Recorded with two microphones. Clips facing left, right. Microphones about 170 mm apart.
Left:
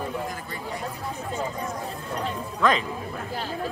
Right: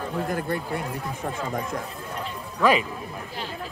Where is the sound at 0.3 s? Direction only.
60° right (ahead or behind).